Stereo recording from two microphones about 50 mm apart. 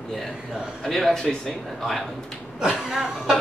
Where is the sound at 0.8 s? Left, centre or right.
Centre.